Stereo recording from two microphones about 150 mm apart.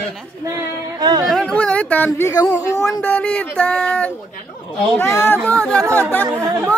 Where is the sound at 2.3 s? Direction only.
25° left (ahead or behind).